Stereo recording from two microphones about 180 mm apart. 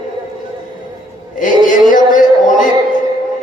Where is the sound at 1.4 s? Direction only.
45° left (ahead or behind).